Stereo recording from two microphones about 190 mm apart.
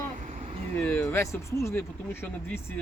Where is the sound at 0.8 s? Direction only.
10° left (ahead or behind).